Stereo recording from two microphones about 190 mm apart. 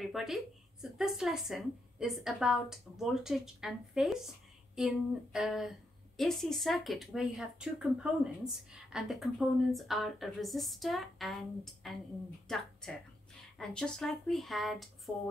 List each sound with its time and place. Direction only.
0.0 s a woman's voice: centre (ahead or behind)